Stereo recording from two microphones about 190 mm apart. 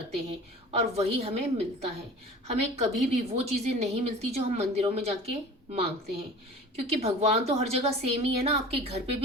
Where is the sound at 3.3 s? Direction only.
35° right (ahead or behind).